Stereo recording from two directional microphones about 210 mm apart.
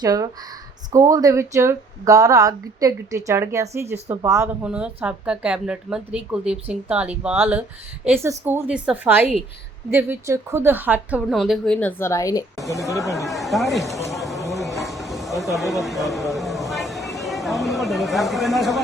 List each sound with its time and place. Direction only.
0.0 s a woman's voice: 15° right (ahead or behind); by 12.8 s 15° left (ahead or behind)
13.2 s speech: centre (ahead or behind)
14.8 s a sound: centre (ahead or behind)